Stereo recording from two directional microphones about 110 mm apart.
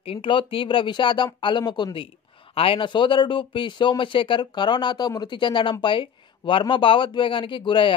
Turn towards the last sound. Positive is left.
turn(degrees=50)  # may be behind; listen again after turning